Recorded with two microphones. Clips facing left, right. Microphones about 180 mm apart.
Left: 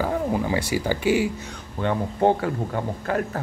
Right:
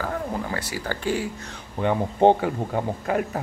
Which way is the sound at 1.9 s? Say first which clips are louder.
Right 3 dB; 25° right (ahead or behind).